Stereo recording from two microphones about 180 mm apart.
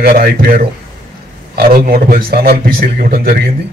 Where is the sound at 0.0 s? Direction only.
60° right (ahead or behind).